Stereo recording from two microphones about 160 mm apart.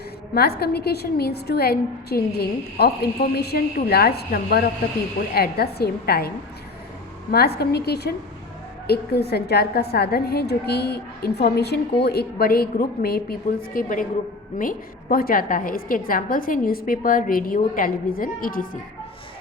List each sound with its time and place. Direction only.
0.3 s a woman's voice: 80° left; by 18.8 s 60° left (ahead or behind)